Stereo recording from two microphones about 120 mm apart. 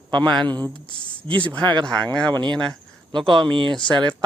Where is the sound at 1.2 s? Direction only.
45° right (ahead or behind).